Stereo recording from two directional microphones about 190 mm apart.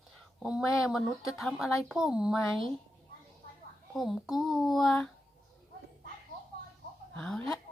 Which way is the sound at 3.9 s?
Centre (ahead or behind).